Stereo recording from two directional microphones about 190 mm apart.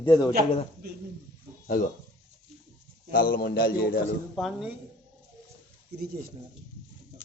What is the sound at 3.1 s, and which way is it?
Speech, 50° left (ahead or behind).